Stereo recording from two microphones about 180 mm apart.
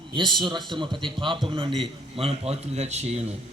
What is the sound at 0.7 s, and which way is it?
A man's voice, 25° right (ahead or behind).